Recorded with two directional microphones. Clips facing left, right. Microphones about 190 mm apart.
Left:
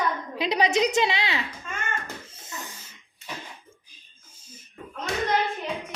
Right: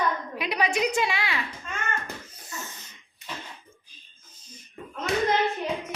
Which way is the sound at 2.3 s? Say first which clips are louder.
Even; 25° left (ahead or behind).